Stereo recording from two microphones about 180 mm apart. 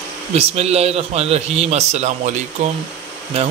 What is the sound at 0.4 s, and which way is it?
A man's voice, 35° right (ahead or behind).